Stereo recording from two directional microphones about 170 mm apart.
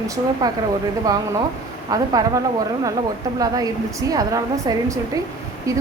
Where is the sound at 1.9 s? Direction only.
20° right (ahead or behind).